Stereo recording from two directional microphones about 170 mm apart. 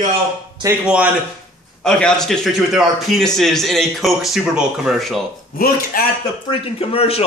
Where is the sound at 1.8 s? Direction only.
5° left (ahead or behind).